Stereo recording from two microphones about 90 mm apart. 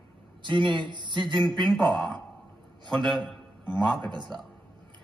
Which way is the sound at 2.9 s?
60° right (ahead or behind).